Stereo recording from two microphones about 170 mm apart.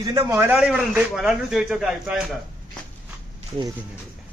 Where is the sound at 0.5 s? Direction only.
5° right (ahead or behind).